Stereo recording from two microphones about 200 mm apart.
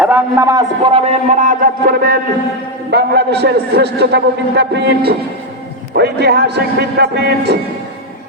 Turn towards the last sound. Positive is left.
turn(degrees=-55)  # may be behind; listen again after turning